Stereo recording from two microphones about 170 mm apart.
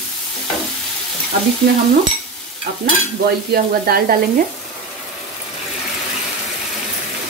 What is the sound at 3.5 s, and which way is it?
Speech, 60° right (ahead or behind).